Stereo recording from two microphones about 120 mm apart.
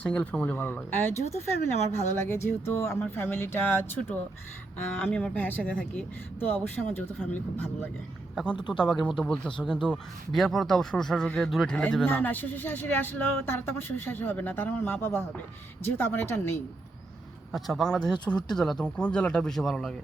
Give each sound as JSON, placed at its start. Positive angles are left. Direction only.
{"t": 0.0, "sound": "speech", "side_deg": 10}
{"t": 2.2, "sound": "speech", "side_deg": 20}
{"t": 17.5, "sound": "speech", "side_deg": 0}